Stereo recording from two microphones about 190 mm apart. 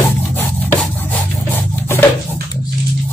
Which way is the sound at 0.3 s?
10° left (ahead or behind).